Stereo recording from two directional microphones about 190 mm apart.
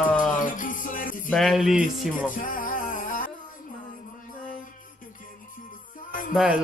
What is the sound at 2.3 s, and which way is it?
Music, 45° left (ahead or behind).